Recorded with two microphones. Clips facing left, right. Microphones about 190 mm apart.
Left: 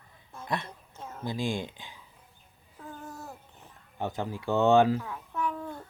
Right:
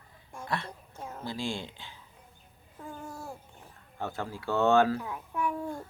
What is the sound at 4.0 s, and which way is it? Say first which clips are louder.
Speech: left 3 dB; 20° left (ahead or behind).